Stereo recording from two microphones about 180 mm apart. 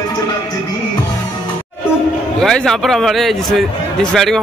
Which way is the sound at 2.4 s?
5° left (ahead or behind).